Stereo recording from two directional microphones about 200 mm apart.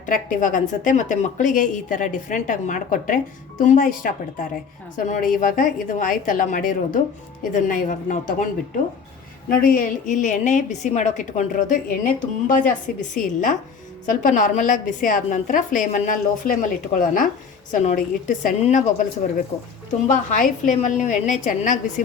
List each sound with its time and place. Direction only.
0.0 s a woman's voice: 40° left (ahead or behind)
9.5 s a woman's voice: 45° left (ahead or behind)
20.1 s a woman's voice: 40° left (ahead or behind)